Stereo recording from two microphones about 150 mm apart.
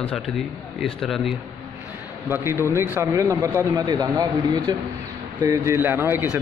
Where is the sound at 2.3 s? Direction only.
15° right (ahead or behind).